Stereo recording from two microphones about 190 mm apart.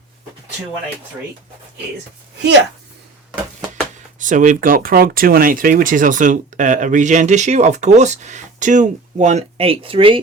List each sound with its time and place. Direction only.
4.2 s speech: 45° right (ahead or behind)